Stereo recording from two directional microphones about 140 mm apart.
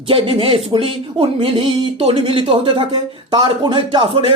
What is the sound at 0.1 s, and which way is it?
Speech, 40° right (ahead or behind).